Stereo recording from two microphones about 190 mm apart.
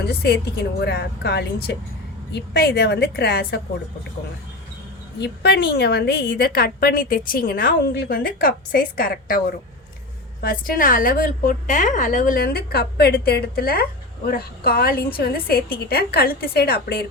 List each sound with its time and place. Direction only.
0.0 s a woman's voice: 55° left (ahead or behind)
5.2 s a woman's voice: 60° left (ahead or behind)